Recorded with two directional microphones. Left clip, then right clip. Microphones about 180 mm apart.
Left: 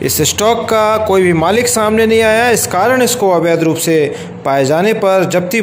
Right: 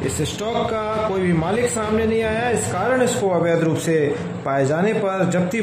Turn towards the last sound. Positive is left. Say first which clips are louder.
# left 9 dB
turn(degrees=35)  # may be behind; listen again after turning